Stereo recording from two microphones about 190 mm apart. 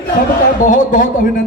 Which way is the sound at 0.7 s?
45° left (ahead or behind).